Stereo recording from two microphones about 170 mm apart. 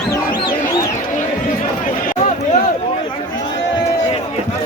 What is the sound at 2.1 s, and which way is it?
Run, 45° left (ahead or behind).